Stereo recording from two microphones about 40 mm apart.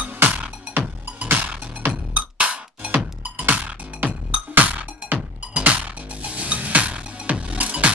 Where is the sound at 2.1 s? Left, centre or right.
Right.